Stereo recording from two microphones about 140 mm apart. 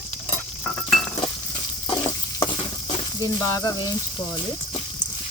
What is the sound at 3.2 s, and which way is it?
Sizzle, 25° left (ahead or behind).